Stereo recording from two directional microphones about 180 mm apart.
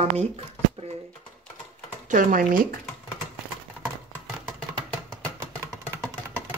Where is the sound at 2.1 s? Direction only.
50° right (ahead or behind).